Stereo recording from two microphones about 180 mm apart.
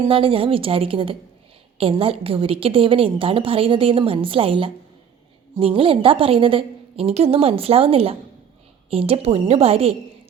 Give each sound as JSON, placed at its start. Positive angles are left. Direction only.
{"t": 0.1, "sound": "a woman's voice", "side_deg": -30}